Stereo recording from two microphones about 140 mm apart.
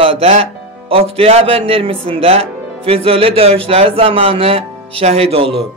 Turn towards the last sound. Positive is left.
turn(degrees=-45)  # may be behind; listen again after turning